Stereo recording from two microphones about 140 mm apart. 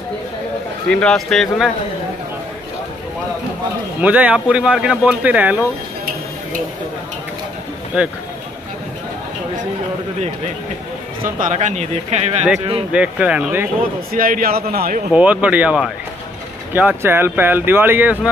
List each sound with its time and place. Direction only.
0.8 s speech: 5° left (ahead or behind)
4.0 s speech: 10° right (ahead or behind)
11.3 s speech: 65° right (ahead or behind)
12.9 s speech: 10° right (ahead or behind)
14.1 s a man's voice: 85° right
15.1 s speech: 10° right (ahead or behind)